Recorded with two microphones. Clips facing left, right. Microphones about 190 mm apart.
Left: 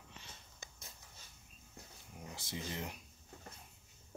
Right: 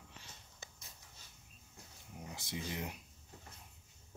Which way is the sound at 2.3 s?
15° right (ahead or behind).